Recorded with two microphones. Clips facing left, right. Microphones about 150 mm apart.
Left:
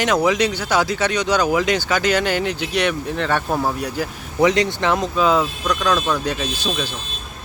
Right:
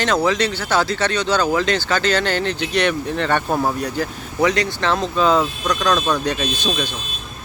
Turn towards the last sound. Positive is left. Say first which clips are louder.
# right 1 dB
turn(degrees=5)  # may be behind; listen again after turning